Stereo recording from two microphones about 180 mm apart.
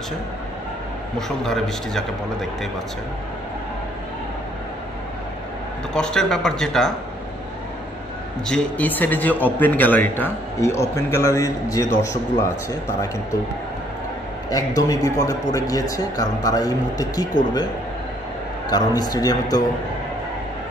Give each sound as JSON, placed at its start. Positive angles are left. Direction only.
{"t": 1.1, "sound": "speech", "side_deg": 0}
{"t": 5.9, "sound": "speech", "side_deg": 5}
{"t": 8.5, "sound": "a man's voice", "side_deg": 5}
{"t": 14.5, "sound": "a man's voice", "side_deg": 20}
{"t": 18.7, "sound": "a man's voice", "side_deg": 20}